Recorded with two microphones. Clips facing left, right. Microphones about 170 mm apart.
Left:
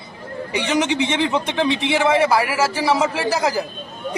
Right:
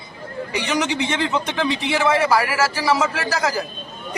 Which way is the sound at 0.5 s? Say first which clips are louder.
Left 3 dB; 25° left (ahead or behind).